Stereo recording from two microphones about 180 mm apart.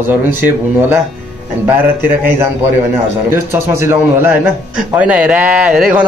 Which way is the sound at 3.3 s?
15° right (ahead or behind).